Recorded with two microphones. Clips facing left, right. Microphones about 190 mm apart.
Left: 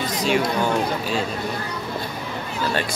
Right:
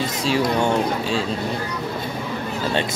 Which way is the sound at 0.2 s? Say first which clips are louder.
Right 1 dB; 30° right (ahead or behind).